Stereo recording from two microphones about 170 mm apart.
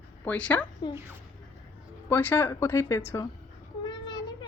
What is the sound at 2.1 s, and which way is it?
A woman's voice, 10° left (ahead or behind).